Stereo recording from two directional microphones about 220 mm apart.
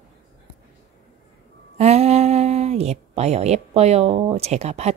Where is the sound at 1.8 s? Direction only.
30° right (ahead or behind).